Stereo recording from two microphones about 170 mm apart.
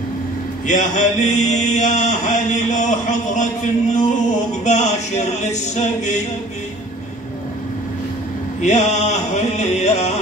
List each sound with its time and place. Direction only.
0.7 s mantra: 45° left (ahead or behind)
8.5 s music: 40° left (ahead or behind)